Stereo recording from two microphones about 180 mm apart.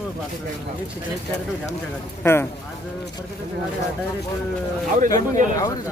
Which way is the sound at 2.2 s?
15° left (ahead or behind).